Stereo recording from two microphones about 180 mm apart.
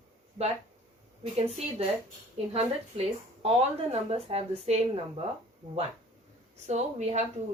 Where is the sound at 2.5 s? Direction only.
35° right (ahead or behind).